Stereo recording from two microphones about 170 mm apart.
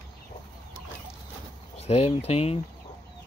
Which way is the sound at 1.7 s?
35° left (ahead or behind).